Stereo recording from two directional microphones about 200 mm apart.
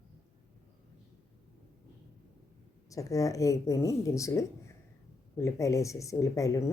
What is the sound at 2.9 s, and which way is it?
A woman's voice, 15° left (ahead or behind).